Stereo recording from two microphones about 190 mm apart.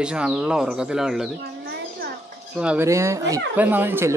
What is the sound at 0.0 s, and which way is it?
Speech, 5° right (ahead or behind).